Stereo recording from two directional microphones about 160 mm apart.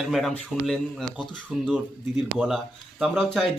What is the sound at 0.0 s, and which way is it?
A man's voice, centre (ahead or behind).